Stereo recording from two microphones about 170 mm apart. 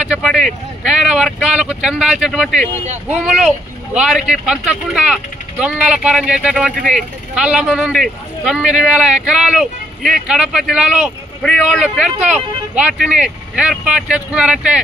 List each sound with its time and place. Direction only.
0.0 s a man's voice: centre (ahead or behind)
2.8 s speech: 40° right (ahead or behind)
3.4 s a man's voice: 5° right (ahead or behind)